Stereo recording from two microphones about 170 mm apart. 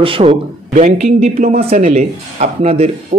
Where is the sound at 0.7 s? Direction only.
40° right (ahead or behind).